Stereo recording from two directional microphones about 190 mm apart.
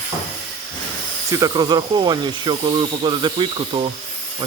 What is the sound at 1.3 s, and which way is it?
Speech, 20° right (ahead or behind).